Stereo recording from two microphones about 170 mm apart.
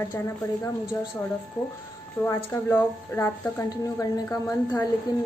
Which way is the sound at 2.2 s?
15° left (ahead or behind).